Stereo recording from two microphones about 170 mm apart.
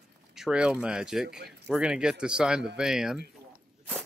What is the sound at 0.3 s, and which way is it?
Speech, 5° right (ahead or behind).